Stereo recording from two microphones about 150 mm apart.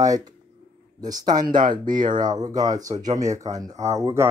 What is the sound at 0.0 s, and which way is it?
Speech, 25° right (ahead or behind).